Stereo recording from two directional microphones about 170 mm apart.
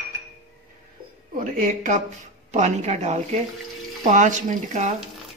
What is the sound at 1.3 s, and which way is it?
A woman's voice, 50° right (ahead or behind).